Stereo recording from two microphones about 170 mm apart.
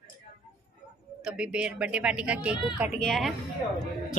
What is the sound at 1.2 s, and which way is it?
A woman's voice, 5° right (ahead or behind).